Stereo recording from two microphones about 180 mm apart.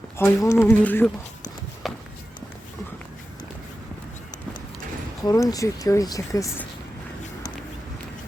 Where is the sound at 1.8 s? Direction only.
Centre (ahead or behind).